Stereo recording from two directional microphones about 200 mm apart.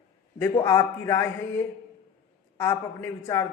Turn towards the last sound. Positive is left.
turn(degrees=15)  # may be behind; listen again after turning